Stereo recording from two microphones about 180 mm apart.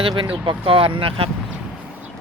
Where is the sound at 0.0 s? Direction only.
25° right (ahead or behind).